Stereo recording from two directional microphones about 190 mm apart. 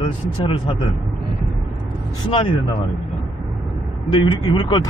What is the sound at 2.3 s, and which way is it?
Speech, 25° left (ahead or behind).